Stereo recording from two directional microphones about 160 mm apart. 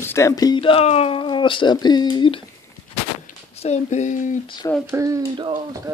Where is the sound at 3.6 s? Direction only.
45° left (ahead or behind).